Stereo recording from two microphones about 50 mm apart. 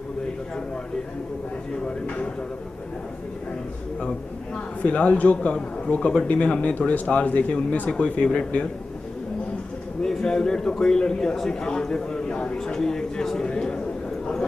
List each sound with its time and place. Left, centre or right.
4.8 s speech: left
7.9 s speech: centre
10.0 s a man's voice: centre